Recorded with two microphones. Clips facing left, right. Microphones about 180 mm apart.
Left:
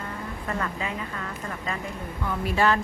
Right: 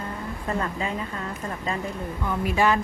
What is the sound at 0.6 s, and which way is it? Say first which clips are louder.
A woman's voice: right 2 dB; 30° right (ahead or behind).